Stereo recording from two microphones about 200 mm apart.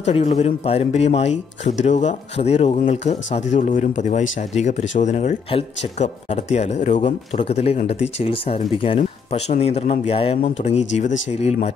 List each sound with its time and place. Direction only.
0.0 s speech: 30° left (ahead or behind)